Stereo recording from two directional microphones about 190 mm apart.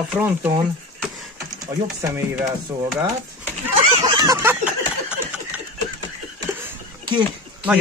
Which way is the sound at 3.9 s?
20° right (ahead or behind).